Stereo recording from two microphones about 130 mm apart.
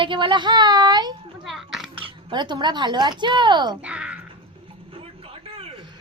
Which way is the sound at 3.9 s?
10° right (ahead or behind).